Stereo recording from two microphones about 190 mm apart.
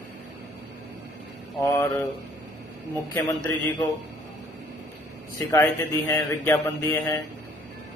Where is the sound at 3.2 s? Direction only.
20° left (ahead or behind).